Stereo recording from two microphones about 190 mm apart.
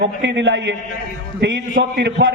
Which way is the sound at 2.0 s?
65° right (ahead or behind).